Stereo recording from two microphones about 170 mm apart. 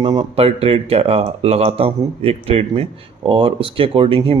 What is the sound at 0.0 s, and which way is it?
Speech, 25° right (ahead or behind).